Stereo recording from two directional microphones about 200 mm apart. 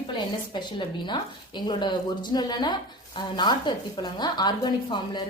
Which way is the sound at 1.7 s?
20° left (ahead or behind).